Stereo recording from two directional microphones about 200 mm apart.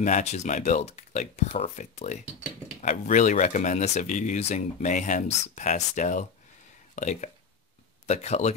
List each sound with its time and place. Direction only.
0.0 s speech: 35° left (ahead or behind)